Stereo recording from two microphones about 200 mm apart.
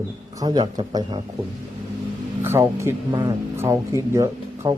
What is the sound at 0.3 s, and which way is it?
Speech, 20° right (ahead or behind).